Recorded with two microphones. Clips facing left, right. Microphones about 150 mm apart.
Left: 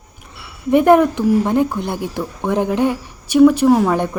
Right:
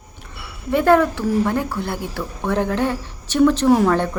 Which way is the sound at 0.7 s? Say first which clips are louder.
Left 4 dB; 20° left (ahead or behind).